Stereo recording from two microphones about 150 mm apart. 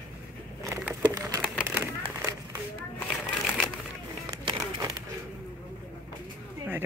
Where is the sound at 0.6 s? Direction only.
20° right (ahead or behind).